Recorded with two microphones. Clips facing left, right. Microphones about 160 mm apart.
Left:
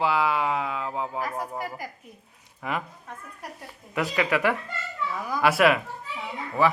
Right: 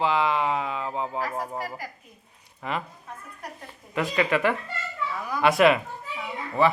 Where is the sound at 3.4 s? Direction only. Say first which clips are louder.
Even; 10° left (ahead or behind).